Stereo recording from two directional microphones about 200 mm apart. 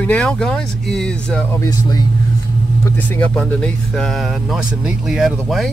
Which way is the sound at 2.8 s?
5° left (ahead or behind).